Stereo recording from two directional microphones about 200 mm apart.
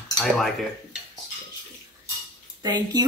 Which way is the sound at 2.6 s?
20° right (ahead or behind).